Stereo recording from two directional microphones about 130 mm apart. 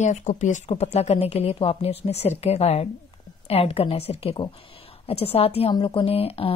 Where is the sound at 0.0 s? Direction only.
65° left (ahead or behind).